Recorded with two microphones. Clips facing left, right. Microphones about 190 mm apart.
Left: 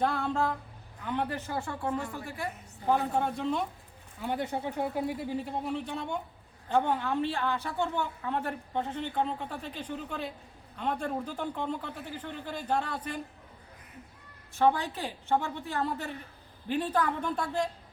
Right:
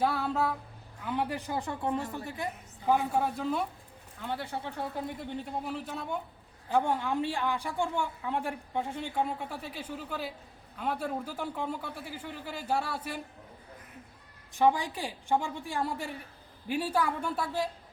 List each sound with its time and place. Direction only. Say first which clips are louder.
0.0 s a man's voice: even; 5° right (ahead or behind)
2.8 s a man's voice: even; 5° right (ahead or behind)
4.2 s a woman's voice: left 4 dB; 15° left (ahead or behind); by 13.2 s 10° right (ahead or behind)
14.5 s a woman's voice: even; 10° right (ahead or behind)